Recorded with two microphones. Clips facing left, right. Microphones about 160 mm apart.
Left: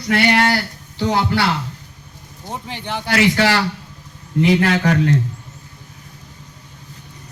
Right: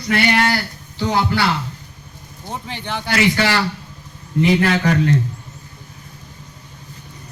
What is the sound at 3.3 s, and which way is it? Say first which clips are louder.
Speech: left 2 dB; 75° left (ahead or behind).